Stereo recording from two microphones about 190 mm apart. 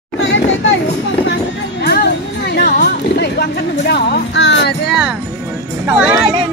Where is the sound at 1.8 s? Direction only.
60° left (ahead or behind).